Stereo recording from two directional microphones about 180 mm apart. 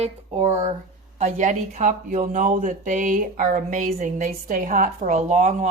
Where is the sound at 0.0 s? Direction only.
35° right (ahead or behind).